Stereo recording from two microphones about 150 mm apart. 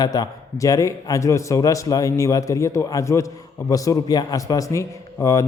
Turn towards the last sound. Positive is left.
turn(degrees=20)  # may be behind; listen again after turning